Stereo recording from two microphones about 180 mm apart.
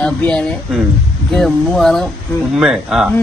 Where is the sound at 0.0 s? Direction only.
5° left (ahead or behind).